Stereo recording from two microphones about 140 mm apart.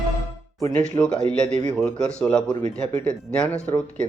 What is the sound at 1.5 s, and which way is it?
Speech, 55° right (ahead or behind).